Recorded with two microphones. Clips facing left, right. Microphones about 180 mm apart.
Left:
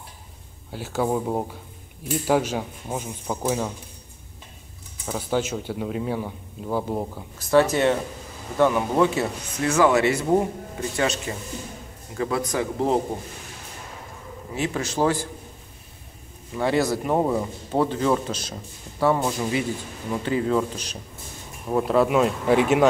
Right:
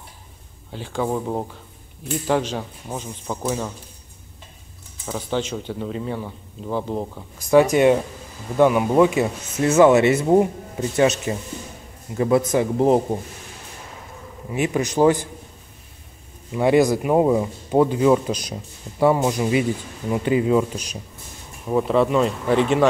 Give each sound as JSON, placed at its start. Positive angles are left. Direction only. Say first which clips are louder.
{"t": 0.7, "sound": "a man's voice", "louder": "even", "side_deg": 5}
{"t": 5.0, "sound": "a man's voice", "louder": "even", "side_deg": 5}
{"t": 7.3, "sound": "a man's voice", "louder": "right 4 dB", "side_deg": -15}
{"t": 9.6, "sound": "speech", "louder": "right 5 dB", "side_deg": -25}
{"t": 14.5, "sound": "a man's voice", "louder": "right 5 dB", "side_deg": -15}
{"t": 16.5, "sound": "a man's voice", "louder": "right 6 dB", "side_deg": -15}
{"t": 21.6, "sound": "speech", "louder": "right 2 dB", "side_deg": 0}